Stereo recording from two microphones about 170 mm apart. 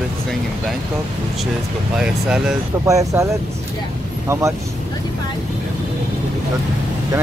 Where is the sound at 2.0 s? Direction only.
5° right (ahead or behind).